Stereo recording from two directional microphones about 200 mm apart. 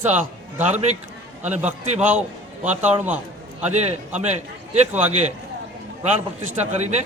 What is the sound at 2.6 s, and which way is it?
A man's voice, 10° right (ahead or behind).